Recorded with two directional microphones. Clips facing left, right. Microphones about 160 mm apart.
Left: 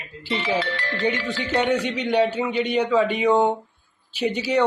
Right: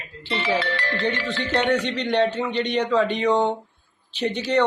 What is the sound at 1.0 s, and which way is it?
Speech, 5° left (ahead or behind).